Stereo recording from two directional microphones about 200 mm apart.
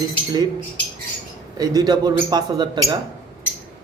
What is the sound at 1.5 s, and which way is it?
A man's voice, 20° right (ahead or behind).